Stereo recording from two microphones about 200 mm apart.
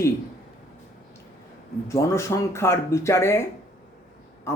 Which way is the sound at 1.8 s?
15° left (ahead or behind).